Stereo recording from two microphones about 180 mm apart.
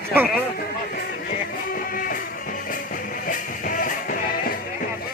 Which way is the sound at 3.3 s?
50° left (ahead or behind).